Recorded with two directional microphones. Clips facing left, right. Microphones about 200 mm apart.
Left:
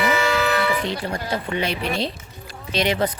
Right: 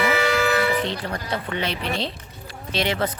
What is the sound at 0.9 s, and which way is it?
Speech, 10° left (ahead or behind).